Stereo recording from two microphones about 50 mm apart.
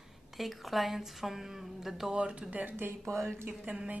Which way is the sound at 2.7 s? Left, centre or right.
Right.